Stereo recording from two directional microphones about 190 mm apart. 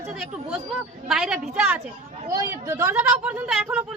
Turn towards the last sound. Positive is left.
turn(degrees=-5)  # may be behind; listen again after turning